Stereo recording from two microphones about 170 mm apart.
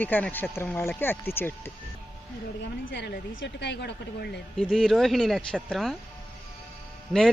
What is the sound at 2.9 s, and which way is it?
A woman's voice, 90° left.